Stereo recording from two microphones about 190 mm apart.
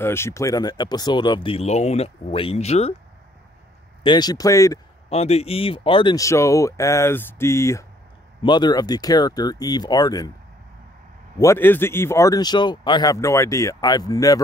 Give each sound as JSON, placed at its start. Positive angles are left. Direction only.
{"t": 0.0, "sound": "speech", "side_deg": 15}
{"t": 4.0, "sound": "speech", "side_deg": 20}
{"t": 5.1, "sound": "speech", "side_deg": 35}
{"t": 11.3, "sound": "speech", "side_deg": 15}